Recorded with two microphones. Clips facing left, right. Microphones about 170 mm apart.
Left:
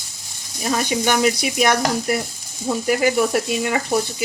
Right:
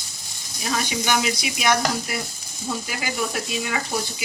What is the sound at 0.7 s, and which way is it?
Speech, 45° left (ahead or behind).